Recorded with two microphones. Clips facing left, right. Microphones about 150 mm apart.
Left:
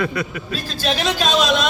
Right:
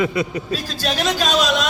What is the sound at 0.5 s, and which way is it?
A man's voice, 10° right (ahead or behind).